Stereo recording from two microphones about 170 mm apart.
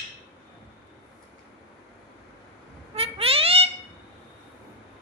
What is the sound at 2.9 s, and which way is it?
Cat, 35° right (ahead or behind).